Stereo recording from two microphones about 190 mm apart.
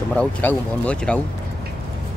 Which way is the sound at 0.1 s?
10° left (ahead or behind).